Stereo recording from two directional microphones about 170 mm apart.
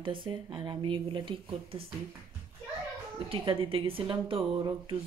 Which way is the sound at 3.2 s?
30° right (ahead or behind).